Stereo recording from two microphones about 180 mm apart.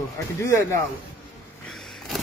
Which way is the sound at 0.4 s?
15° left (ahead or behind).